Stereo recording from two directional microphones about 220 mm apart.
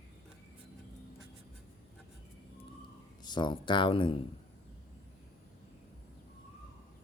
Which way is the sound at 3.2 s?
20° left (ahead or behind).